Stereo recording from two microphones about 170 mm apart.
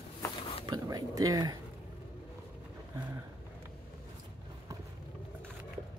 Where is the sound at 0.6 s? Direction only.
25° right (ahead or behind).